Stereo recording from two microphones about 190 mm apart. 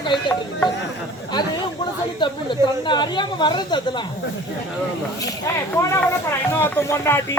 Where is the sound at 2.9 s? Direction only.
25° left (ahead or behind).